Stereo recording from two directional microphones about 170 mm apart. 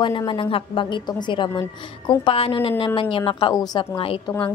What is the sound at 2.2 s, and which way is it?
A woman's voice, 35° left (ahead or behind).